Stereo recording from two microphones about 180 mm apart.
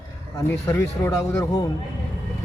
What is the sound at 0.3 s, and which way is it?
Speech, 15° left (ahead or behind).